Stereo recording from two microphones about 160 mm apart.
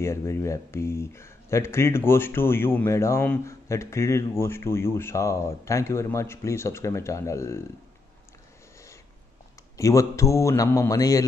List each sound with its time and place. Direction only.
0.0 s speech: 15° left (ahead or behind)
9.8 s a man's voice: 20° left (ahead or behind)